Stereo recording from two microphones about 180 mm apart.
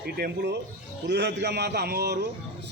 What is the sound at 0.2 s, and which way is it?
Speech, 60° right (ahead or behind).